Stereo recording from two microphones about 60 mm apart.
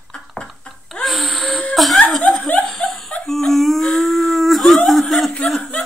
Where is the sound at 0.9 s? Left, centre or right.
Centre.